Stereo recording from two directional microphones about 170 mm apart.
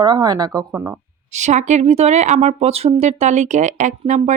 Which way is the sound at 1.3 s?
45° right (ahead or behind).